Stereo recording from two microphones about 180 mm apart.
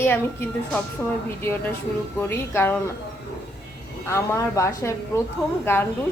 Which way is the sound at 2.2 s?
10° left (ahead or behind).